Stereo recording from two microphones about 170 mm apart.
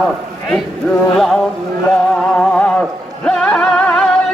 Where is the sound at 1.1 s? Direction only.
5° left (ahead or behind).